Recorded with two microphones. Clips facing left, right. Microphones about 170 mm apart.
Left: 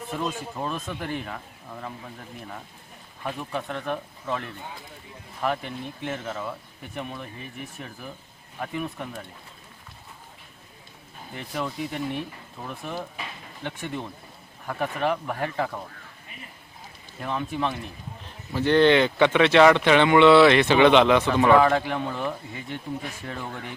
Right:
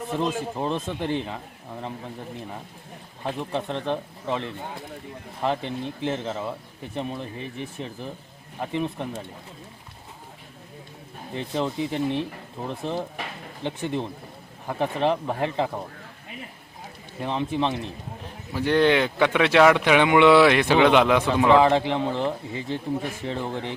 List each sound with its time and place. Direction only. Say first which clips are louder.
0.1 s speech: right 4 dB; 25° right (ahead or behind)
3.2 s speech: right 3 dB; 25° right (ahead or behind)
11.3 s speech: right 4 dB; 25° right (ahead or behind)
17.2 s speech: right 3 dB; 25° right (ahead or behind)
18.5 s speech: left 2 dB; 10° right (ahead or behind)
21.5 s speech: right 2 dB; 25° right (ahead or behind)